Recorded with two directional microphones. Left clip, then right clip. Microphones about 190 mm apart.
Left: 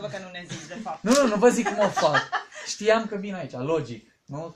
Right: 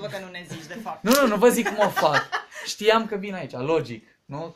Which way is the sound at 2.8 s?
5° right (ahead or behind).